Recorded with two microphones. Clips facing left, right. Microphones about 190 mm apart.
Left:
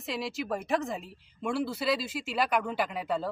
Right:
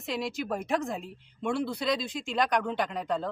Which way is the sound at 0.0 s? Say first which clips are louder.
Right 2 dB; centre (ahead or behind).